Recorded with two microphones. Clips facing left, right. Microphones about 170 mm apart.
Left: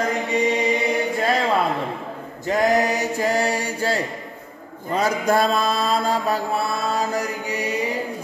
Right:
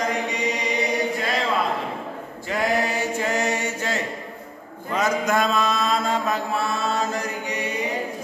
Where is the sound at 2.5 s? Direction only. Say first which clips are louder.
Left 4 dB; 40° left (ahead or behind).